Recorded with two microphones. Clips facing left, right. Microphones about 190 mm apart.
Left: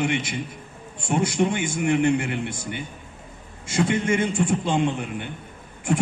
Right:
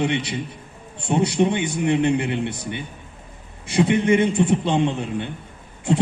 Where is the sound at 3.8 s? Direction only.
20° right (ahead or behind).